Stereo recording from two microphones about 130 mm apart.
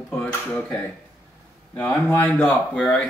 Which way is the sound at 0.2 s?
10° left (ahead or behind).